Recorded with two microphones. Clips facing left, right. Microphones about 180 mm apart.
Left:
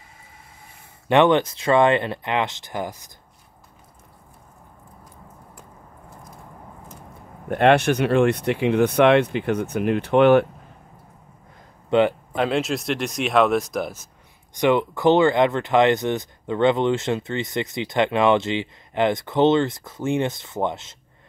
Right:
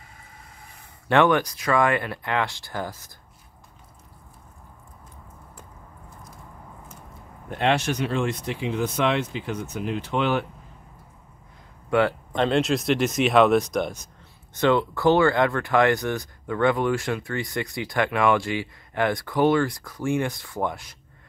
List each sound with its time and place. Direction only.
1.0 s speech: 20° left (ahead or behind)
7.4 s speech: 60° left (ahead or behind)
11.9 s speech: 20° left (ahead or behind)
12.3 s speech: 5° left (ahead or behind)
14.5 s speech: 15° left (ahead or behind)